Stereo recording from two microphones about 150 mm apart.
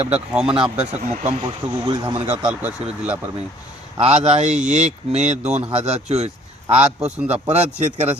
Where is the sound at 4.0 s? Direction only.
45° right (ahead or behind).